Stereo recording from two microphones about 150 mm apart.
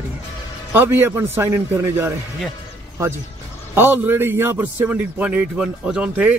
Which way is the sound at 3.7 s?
15° right (ahead or behind).